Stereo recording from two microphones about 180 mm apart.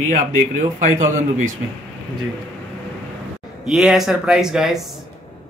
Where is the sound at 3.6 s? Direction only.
5° right (ahead or behind).